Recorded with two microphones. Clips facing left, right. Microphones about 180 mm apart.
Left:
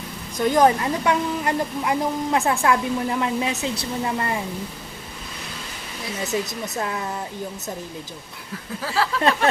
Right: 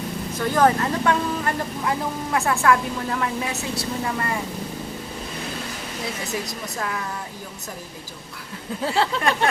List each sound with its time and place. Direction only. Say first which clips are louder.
0.3 s a woman's voice: left 2 dB; 15° left (ahead or behind)
6.7 s speech: left 2 dB; 25° left (ahead or behind)
8.8 s a sound: right 2 dB; 25° right (ahead or behind)